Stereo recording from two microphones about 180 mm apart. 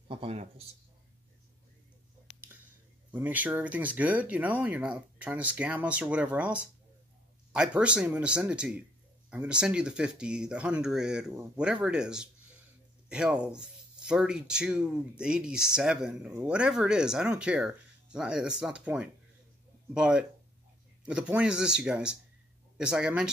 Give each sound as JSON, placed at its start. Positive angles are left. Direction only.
{"t": 0.1, "sound": "a man's voice", "side_deg": -30}
{"t": 3.1, "sound": "speech", "side_deg": -10}